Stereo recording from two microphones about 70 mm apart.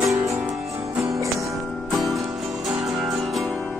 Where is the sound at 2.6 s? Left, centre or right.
Centre.